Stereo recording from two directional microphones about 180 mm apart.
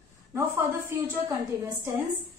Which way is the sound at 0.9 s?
10° right (ahead or behind).